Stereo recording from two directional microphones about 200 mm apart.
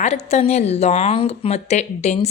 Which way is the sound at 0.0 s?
35° left (ahead or behind).